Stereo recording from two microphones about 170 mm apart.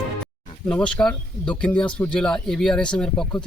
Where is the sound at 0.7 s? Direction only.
10° left (ahead or behind).